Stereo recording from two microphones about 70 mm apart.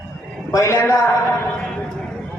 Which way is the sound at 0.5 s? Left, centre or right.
Left.